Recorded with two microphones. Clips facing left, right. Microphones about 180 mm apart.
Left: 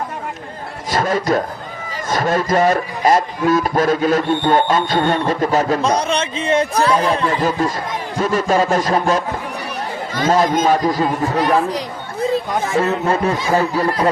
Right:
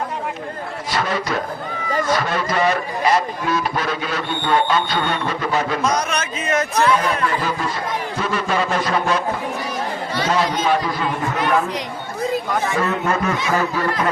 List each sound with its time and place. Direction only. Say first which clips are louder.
0.9 s a sound: left 6 dB; 45° left (ahead or behind)
2.0 s speech: left 7 dB; 45° left (ahead or behind)
5.8 s speech: left 3 dB; 30° left (ahead or behind)